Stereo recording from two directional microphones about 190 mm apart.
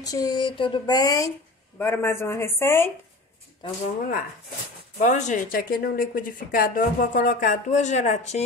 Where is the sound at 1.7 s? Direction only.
10° left (ahead or behind).